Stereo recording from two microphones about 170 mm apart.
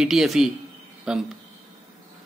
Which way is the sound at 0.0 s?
Centre (ahead or behind).